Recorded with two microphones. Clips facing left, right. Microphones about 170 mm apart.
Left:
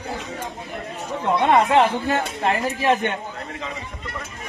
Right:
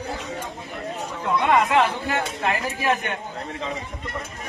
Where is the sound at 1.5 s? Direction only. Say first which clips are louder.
Left 3 dB; 30° left (ahead or behind).